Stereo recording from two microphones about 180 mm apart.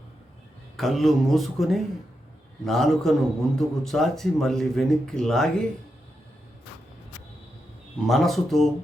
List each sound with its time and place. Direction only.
0.8 s a man's voice: centre (ahead or behind)
8.0 s a man's voice: centre (ahead or behind)